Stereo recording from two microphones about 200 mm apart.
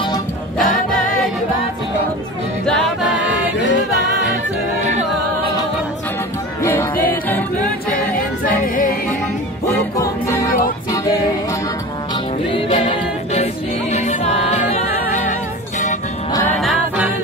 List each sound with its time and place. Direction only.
0.6 s choir: 40° left (ahead or behind)
6.6 s music: 10° left (ahead or behind)
8.5 s a sound: 45° left (ahead or behind)
9.9 s music: 15° left (ahead or behind)
12.4 s music: 25° left (ahead or behind)
16.3 s music: 15° left (ahead or behind)
16.5 s music: 5° right (ahead or behind)